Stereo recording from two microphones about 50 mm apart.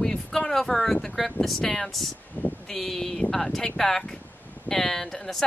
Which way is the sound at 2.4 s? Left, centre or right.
Left.